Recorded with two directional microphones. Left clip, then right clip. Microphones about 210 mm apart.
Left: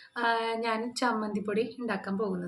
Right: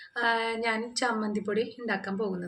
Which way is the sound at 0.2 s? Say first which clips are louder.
Right 1 dB; centre (ahead or behind).